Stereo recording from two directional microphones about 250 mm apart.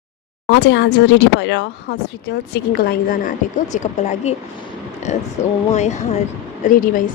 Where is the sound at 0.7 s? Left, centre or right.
Left.